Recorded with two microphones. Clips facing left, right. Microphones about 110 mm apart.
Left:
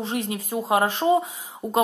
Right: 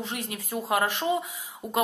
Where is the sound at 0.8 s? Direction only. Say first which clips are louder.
Left 6 dB; 35° left (ahead or behind).